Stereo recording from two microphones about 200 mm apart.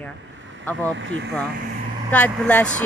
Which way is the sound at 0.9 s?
65° right (ahead or behind).